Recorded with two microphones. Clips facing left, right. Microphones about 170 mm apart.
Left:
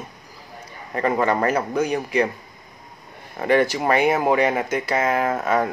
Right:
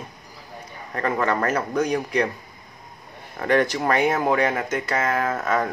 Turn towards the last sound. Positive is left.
turn(degrees=10)  # may be behind; listen again after turning